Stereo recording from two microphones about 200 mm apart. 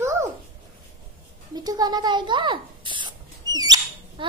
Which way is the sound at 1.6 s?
20° right (ahead or behind).